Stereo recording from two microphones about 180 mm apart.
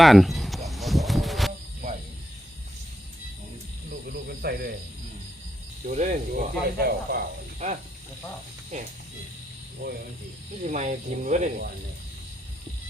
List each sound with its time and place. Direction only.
0.0 s a sound: centre (ahead or behind)
4.0 s snake: 60° right (ahead or behind)
5.8 s speech: 40° right (ahead or behind); by 7.3 s 60° right (ahead or behind)
8.7 s speech: 40° right (ahead or behind)
9.8 s speech: 60° right (ahead or behind)
10.6 s speech: 40° right (ahead or behind)